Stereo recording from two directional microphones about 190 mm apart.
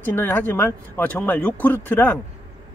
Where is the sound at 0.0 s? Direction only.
10° left (ahead or behind).